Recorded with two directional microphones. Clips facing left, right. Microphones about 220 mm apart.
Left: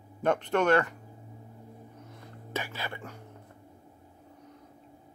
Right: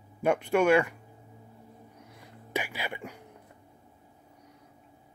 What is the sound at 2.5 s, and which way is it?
Speech, 15° right (ahead or behind).